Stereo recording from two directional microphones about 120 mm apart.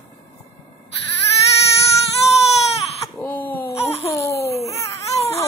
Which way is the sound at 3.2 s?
15° left (ahead or behind).